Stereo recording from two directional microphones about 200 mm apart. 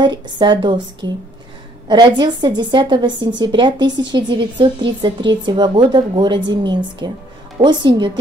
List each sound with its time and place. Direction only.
0.0 s speech: 25° right (ahead or behind)